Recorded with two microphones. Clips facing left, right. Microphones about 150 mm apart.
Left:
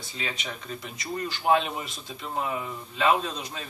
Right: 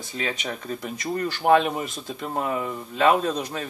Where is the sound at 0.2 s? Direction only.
45° right (ahead or behind).